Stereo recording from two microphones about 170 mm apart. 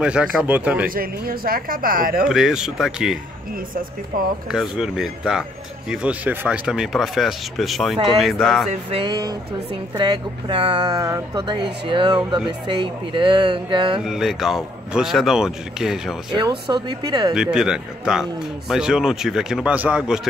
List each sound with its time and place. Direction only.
0.0 s speech: 5° right (ahead or behind)
0.8 s speech: 60° right (ahead or behind)
2.2 s speech: 5° right (ahead or behind)
4.1 s speech: 55° right (ahead or behind)
4.5 s speech: 5° right (ahead or behind)
8.6 s a woman's voice: 30° right (ahead or behind)
14.0 s speech: centre (ahead or behind)
16.3 s a woman's voice: 25° right (ahead or behind)
17.3 s speech: 5° right (ahead or behind)